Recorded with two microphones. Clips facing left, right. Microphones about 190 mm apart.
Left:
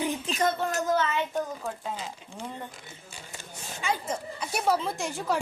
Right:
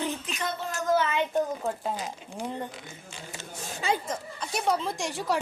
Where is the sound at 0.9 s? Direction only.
15° right (ahead or behind).